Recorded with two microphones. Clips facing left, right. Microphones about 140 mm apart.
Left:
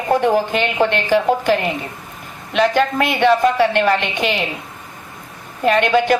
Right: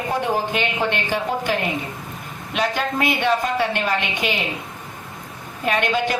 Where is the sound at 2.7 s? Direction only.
55° left (ahead or behind).